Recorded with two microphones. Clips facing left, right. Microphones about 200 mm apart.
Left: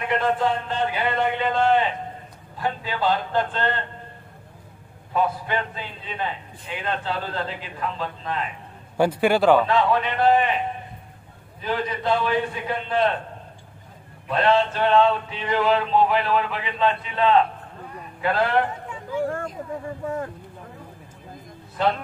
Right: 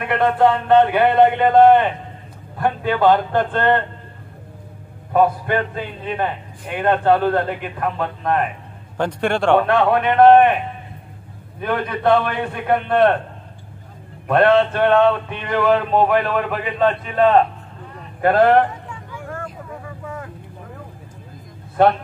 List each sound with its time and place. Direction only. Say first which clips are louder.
0.0 s a man's voice: right 6 dB; 60° right (ahead or behind)
5.1 s a man's voice: right 7 dB; 55° right (ahead or behind)
8.9 s a man's voice: left 1 dB; 5° left (ahead or behind)
9.6 s a man's voice: right 4 dB; 60° right (ahead or behind)
11.6 s a man's voice: right 6 dB; 60° right (ahead or behind)
14.2 s a sound: right 6 dB; 55° right (ahead or behind)
19.2 s vehicle: left 1 dB; 35° left (ahead or behind)
21.8 s a man's voice: right 8 dB; 55° right (ahead or behind)